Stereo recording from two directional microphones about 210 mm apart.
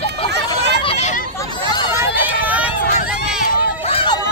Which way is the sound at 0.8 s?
30° left (ahead or behind).